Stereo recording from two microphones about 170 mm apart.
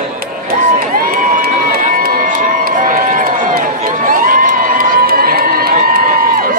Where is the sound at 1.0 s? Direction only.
60° right (ahead or behind).